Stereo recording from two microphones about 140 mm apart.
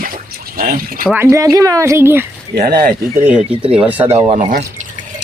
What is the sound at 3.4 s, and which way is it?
Speech, 40° right (ahead or behind).